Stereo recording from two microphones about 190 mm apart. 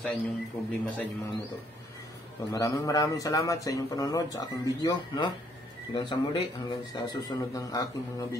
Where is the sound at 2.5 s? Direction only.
15° left (ahead or behind).